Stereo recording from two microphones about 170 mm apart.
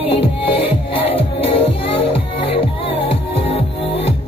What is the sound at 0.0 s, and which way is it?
Music, 30° left (ahead or behind).